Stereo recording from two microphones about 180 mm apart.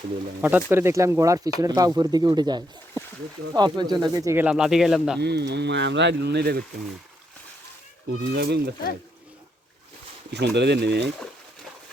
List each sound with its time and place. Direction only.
0.4 s speech: 10° right (ahead or behind)
5.2 s speech: 70° right (ahead or behind)
8.1 s speech: 65° right (ahead or behind)
10.3 s speech: 70° right (ahead or behind)